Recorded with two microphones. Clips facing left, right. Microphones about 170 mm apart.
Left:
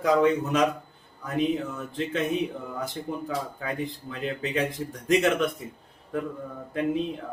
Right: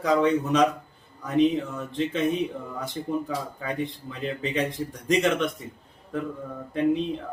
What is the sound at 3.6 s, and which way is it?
Speech, centre (ahead or behind).